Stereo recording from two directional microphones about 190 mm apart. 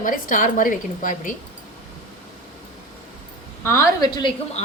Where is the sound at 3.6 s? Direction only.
15° left (ahead or behind).